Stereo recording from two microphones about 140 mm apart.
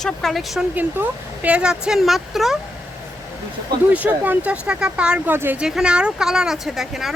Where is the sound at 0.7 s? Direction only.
10° right (ahead or behind).